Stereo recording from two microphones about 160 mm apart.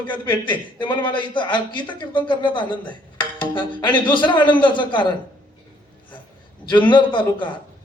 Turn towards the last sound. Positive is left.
turn(degrees=30)  # may be behind; listen again after turning